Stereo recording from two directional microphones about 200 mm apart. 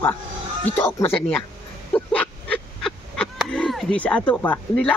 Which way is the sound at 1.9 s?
5° left (ahead or behind).